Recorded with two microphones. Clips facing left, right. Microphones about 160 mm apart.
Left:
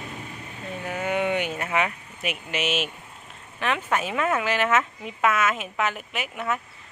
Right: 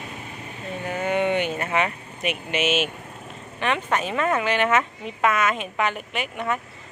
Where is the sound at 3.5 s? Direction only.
Centre (ahead or behind).